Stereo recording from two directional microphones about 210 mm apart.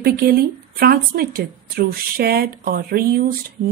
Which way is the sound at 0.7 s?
45° right (ahead or behind).